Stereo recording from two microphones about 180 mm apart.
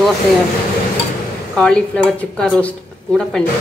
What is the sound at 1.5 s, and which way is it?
Speech, 5° left (ahead or behind).